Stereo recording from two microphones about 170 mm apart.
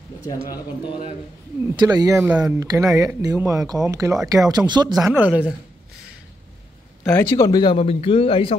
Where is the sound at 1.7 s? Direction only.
20° right (ahead or behind).